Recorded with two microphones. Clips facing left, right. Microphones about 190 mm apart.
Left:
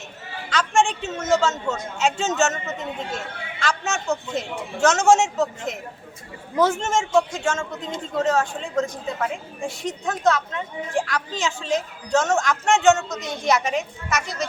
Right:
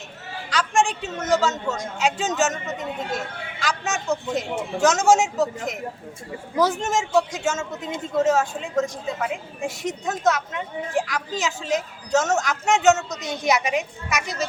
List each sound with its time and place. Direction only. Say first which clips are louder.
0.5 s a woman's voice: left 1 dB; centre (ahead or behind)
13.1 s a woman's voice: even; 15° right (ahead or behind)